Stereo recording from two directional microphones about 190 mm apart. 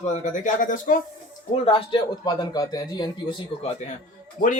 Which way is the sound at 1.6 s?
20° left (ahead or behind).